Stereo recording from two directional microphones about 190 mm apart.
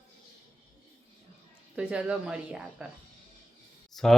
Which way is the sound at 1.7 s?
5° right (ahead or behind).